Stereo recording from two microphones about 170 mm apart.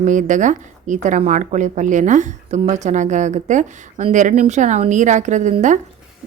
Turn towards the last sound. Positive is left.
turn(degrees=-45)  # may be behind; listen again after turning